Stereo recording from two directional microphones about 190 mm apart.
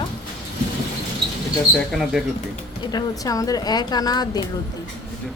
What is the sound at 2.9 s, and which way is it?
A woman's voice, 20° left (ahead or behind).